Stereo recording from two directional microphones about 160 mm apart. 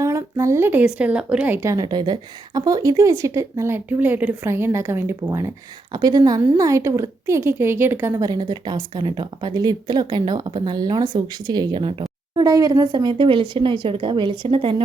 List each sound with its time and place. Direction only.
0.0 s a woman's voice: 20° right (ahead or behind)